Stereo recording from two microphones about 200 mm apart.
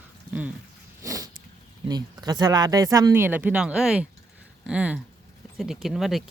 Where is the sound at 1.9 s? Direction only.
20° right (ahead or behind).